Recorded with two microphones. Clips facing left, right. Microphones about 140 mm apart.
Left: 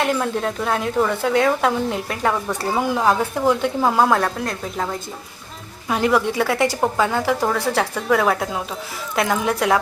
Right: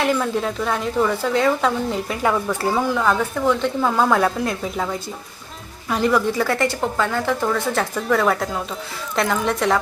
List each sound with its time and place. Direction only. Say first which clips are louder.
0.0 s speech: even; centre (ahead or behind)
2.7 s a woman's voice: left 2 dB; 15° left (ahead or behind)
3.0 s speech: left 1 dB; 35° left (ahead or behind)
3.8 s a woman's voice: left 2 dB; 20° left (ahead or behind)
4.1 s a woman's voice: right 1 dB; centre (ahead or behind)